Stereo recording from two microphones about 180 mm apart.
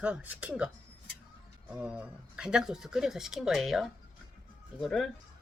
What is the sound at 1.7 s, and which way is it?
Speech, 5° right (ahead or behind).